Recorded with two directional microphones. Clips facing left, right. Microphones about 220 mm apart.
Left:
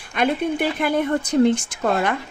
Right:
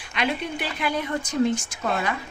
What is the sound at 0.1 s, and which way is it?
Speech, 50° left (ahead or behind).